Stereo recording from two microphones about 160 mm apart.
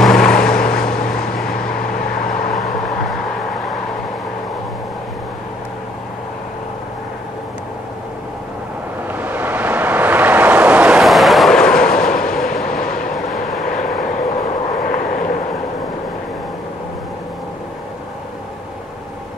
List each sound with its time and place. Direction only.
0.0 s vehicle: 5° left (ahead or behind)
9.1 s vehicle: 10° right (ahead or behind); by 12.2 s 5° left (ahead or behind)
12.3 s train: centre (ahead or behind)
13.3 s vehicle: centre (ahead or behind)
14.0 s vehicle: 65° left (ahead or behind)